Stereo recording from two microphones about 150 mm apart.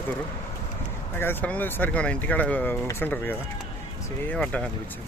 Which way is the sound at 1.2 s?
15° left (ahead or behind).